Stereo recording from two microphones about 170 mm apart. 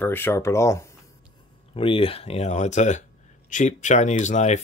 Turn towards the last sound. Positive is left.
turn(degrees=45)  # may be behind; listen again after turning